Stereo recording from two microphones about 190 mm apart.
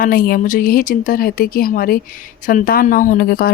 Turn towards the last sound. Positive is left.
turn(degrees=50)  # may be behind; listen again after turning